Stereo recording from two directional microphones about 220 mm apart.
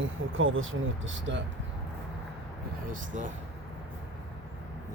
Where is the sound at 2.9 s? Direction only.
35° right (ahead or behind).